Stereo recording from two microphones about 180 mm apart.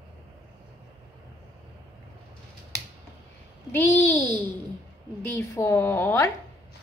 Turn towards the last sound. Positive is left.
turn(degrees=15)  # may be behind; listen again after turning